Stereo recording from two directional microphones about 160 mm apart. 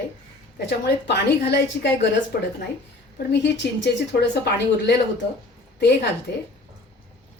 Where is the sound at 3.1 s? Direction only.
90° left.